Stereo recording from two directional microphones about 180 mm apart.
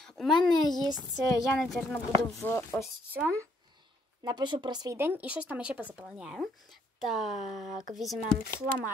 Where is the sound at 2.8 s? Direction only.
Centre (ahead or behind).